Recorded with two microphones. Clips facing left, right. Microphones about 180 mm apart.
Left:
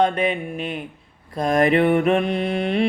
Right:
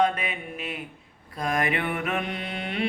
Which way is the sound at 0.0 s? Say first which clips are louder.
Left 6 dB; 35° left (ahead or behind).